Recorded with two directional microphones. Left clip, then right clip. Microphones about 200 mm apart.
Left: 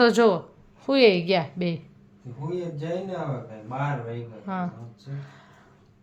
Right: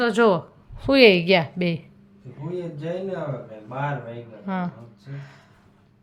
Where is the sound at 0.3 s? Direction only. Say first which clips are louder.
Right 2 dB; 20° right (ahead or behind).